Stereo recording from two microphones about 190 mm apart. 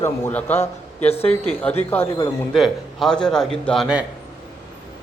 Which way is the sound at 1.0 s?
30° left (ahead or behind).